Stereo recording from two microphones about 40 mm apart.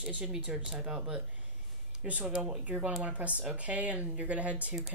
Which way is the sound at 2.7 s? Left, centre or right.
Right.